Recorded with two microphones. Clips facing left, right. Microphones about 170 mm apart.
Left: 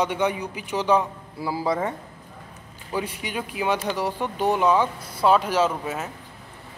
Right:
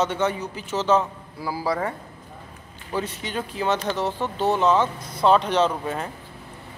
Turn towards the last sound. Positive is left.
turn(degrees=5)  # may be behind; listen again after turning